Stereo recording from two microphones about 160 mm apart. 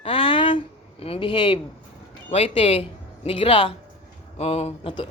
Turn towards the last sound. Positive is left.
turn(degrees=35)  # may be behind; listen again after turning